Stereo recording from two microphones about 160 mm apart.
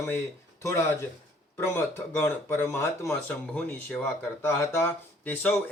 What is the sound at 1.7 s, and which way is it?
A man's voice, 15° left (ahead or behind).